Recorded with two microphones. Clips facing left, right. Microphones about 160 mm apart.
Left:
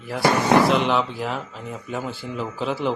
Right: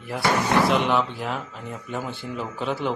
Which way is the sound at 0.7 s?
Centre (ahead or behind).